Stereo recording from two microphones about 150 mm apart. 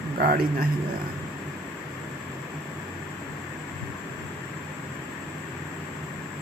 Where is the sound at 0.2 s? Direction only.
75° right (ahead or behind).